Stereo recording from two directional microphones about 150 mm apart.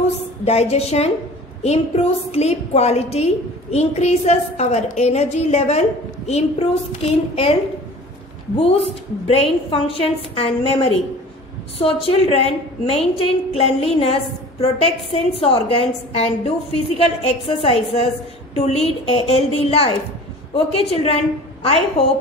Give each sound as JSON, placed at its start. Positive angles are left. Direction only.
{"t": 0.5, "sound": "a woman's voice", "side_deg": 45}
{"t": 8.5, "sound": "a woman's voice", "side_deg": 40}